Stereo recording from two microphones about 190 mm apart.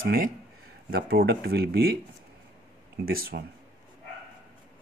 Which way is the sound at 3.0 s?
50° right (ahead or behind).